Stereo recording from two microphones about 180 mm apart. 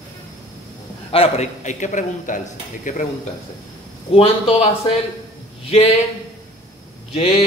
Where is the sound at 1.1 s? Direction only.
35° left (ahead or behind).